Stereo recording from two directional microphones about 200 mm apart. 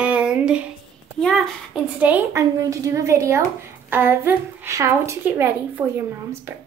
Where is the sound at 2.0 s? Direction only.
10° right (ahead or behind).